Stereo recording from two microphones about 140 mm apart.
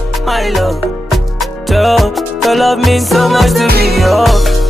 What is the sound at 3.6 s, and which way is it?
Music, 90° right.